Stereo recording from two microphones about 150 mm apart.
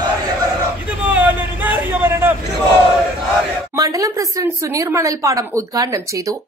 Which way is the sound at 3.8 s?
20° right (ahead or behind).